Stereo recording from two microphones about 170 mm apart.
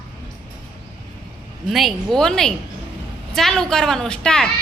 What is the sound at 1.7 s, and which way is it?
A woman's voice, centre (ahead or behind).